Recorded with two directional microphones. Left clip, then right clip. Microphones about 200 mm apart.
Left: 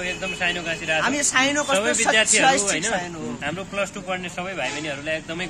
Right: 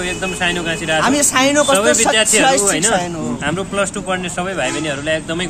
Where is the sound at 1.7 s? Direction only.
10° left (ahead or behind).